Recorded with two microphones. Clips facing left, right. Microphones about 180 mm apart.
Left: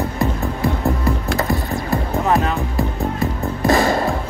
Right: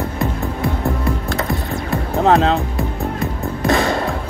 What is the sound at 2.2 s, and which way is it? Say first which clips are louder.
Music: right 7 dB; 85° right.